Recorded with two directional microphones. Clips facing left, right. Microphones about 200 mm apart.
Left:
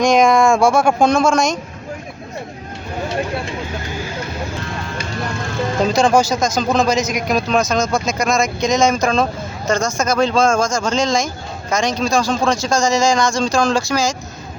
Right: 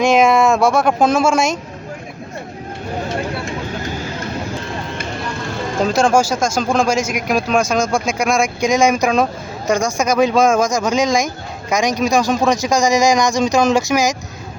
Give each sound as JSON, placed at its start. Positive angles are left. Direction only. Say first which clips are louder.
{"t": 0.0, "sound": "speech", "louder": "even", "side_deg": -5}
{"t": 5.8, "sound": "speech", "louder": "even", "side_deg": -5}